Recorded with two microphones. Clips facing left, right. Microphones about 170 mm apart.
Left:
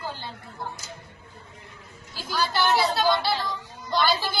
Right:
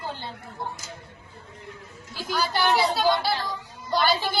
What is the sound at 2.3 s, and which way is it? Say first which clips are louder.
Speech: even; 15° right (ahead or behind).